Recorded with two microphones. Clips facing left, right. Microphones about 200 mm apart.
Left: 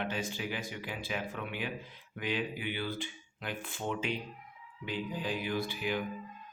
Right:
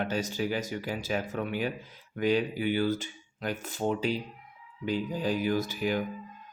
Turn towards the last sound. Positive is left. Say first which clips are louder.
# right 5 dB
turn(degrees=-45)  # may be behind; listen again after turning